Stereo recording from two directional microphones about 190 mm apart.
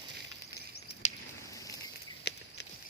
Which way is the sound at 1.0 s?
35° left (ahead or behind).